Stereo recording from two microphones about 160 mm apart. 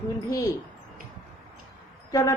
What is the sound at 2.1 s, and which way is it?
Speech, 20° left (ahead or behind).